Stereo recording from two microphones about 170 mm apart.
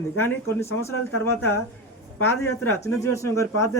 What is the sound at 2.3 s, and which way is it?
A man's voice, 15° left (ahead or behind).